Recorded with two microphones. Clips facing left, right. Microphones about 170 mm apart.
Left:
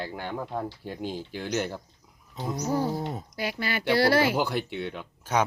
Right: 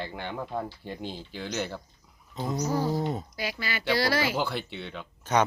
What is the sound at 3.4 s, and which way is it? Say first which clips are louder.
Speech: left 3 dB; 55° left (ahead or behind).